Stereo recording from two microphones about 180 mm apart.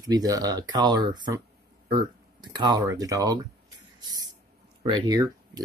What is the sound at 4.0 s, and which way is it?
Spray, 20° right (ahead or behind).